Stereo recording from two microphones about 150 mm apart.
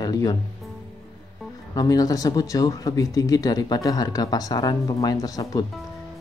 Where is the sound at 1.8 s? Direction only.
25° left (ahead or behind).